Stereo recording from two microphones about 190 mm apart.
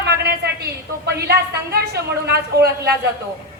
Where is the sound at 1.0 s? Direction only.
60° right (ahead or behind).